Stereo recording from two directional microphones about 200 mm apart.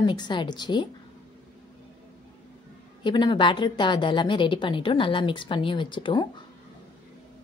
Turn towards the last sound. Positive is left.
turn(degrees=25)  # may be behind; listen again after turning